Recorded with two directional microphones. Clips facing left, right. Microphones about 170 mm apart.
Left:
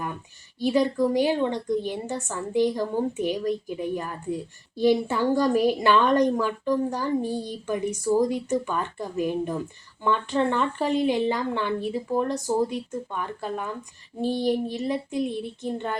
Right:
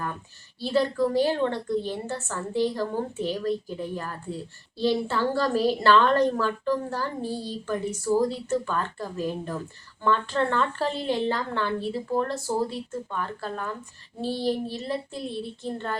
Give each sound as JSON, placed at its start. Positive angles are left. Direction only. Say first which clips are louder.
{"t": 0.6, "sound": "a woman's voice", "louder": "left 2 dB", "side_deg": 15}